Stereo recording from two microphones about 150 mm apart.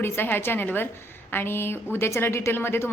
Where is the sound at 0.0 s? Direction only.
15° left (ahead or behind).